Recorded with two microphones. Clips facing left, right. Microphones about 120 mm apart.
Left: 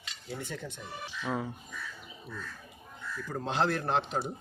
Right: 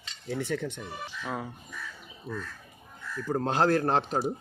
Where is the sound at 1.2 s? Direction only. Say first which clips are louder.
Left 2 dB; centre (ahead or behind).